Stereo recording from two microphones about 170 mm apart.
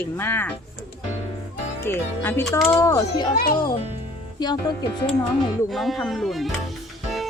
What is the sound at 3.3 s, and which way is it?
Speech, 65° left (ahead or behind).